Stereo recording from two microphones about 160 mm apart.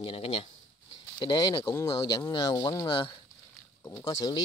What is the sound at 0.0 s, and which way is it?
Speech, 35° left (ahead or behind).